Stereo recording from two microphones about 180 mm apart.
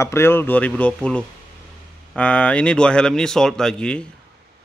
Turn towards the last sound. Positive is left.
turn(degrees=5)  # may be behind; listen again after turning